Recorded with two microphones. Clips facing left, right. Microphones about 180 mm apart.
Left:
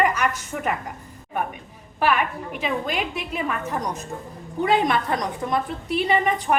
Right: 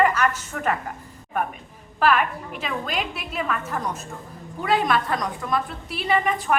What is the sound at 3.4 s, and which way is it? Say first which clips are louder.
A woman's voice: even; 15° left (ahead or behind).